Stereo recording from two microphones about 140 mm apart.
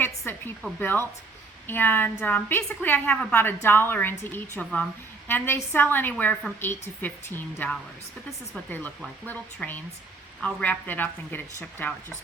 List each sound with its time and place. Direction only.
0.0 s a sound: 15° left (ahead or behind)
0.8 s a woman's voice: 15° left (ahead or behind)
9.2 s a woman's voice: 10° left (ahead or behind)